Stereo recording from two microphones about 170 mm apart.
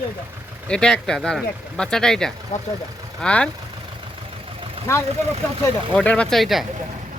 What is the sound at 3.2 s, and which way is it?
Speech, 5° left (ahead or behind).